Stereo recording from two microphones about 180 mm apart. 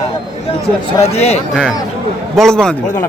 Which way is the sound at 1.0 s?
35° left (ahead or behind).